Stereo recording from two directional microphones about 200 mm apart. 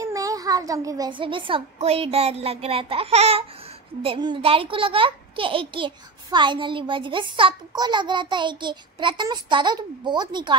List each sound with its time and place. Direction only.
0.0 s a child's voice: 15° right (ahead or behind)